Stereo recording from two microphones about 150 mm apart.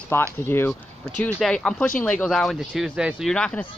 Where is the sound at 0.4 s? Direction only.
15° left (ahead or behind).